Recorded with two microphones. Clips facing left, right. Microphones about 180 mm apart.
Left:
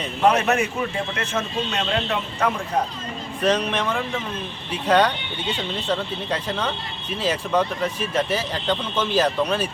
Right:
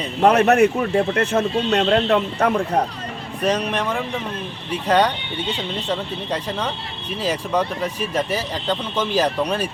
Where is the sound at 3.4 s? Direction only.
10° right (ahead or behind).